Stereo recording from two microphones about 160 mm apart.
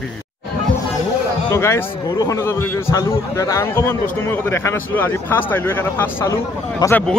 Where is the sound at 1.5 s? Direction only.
15° left (ahead or behind).